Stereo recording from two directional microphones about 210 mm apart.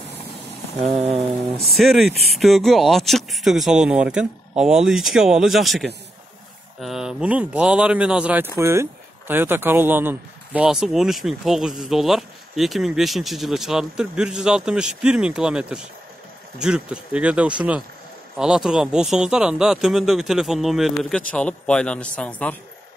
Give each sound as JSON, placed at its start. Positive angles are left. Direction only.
{"t": 0.8, "sound": "rain on surface", "side_deg": -30}
{"t": 1.6, "sound": "speech", "side_deg": 0}